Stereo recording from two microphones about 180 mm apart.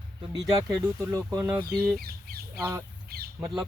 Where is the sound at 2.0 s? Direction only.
55° right (ahead or behind).